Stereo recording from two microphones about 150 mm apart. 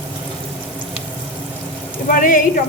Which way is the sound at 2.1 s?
65° left (ahead or behind).